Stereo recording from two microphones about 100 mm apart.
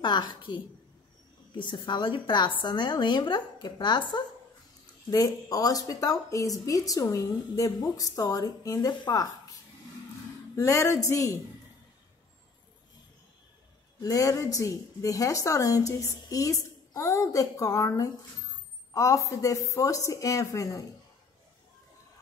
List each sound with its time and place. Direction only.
0.0 s a woman's voice: 50° left (ahead or behind)
1.6 s a woman's voice: 50° left (ahead or behind); by 11.3 s 35° left (ahead or behind)
14.0 s speech: 35° left (ahead or behind)